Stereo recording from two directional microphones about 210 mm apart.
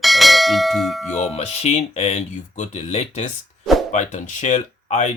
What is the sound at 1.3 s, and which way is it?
Speech, 30° left (ahead or behind).